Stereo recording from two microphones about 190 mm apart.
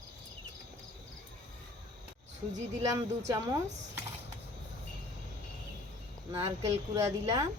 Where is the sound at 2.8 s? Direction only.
15° right (ahead or behind).